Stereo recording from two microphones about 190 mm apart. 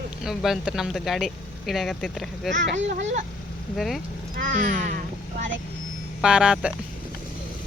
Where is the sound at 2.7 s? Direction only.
75° right (ahead or behind).